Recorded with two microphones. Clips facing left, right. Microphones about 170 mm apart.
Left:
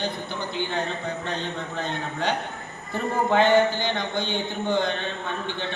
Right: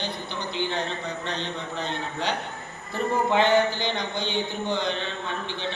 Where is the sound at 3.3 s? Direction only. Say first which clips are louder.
Left 3 dB; 50° left (ahead or behind).